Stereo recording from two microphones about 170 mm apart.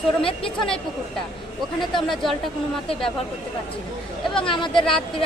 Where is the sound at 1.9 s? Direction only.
Centre (ahead or behind).